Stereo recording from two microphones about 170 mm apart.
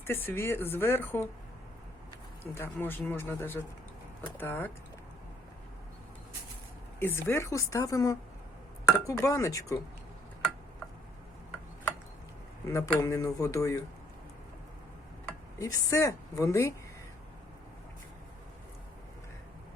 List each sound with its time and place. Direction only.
0.1 s speech: 10° left (ahead or behind)
2.6 s speech: 10° left (ahead or behind)
7.0 s speech: 15° left (ahead or behind)
12.6 s speech: 20° left (ahead or behind)
15.5 s speech: 20° left (ahead or behind)